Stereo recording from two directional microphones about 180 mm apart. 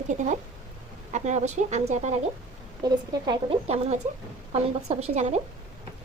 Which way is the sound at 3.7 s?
35° right (ahead or behind).